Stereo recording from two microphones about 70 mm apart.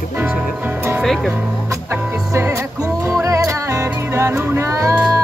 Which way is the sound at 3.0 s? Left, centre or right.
Right.